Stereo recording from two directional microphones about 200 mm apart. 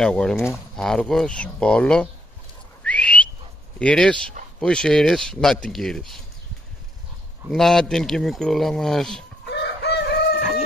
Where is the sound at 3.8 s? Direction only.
5° left (ahead or behind).